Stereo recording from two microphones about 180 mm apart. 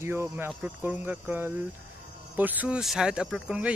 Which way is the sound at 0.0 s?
15° right (ahead or behind).